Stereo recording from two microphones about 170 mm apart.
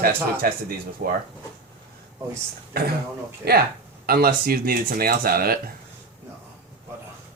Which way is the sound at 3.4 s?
70° right (ahead or behind).